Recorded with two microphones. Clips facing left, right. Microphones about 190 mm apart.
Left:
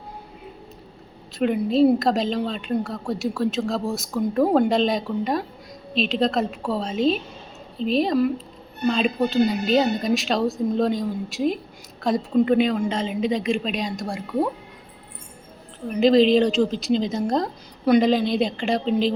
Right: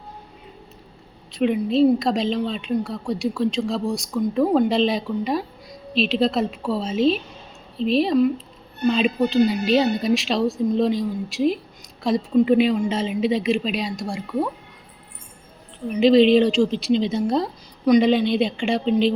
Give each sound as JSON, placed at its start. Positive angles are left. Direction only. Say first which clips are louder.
{"t": 1.4, "sound": "a woman's voice", "louder": "even", "side_deg": 0}
{"t": 15.9, "sound": "a woman's voice", "louder": "right 2 dB", "side_deg": 0}
{"t": 17.0, "sound": "a woman's voice", "louder": "right 2 dB", "side_deg": 40}
{"t": 17.2, "sound": "a woman's voice", "louder": "right 1 dB", "side_deg": -5}
{"t": 18.3, "sound": "a woman's voice", "louder": "right 1 dB", "side_deg": 40}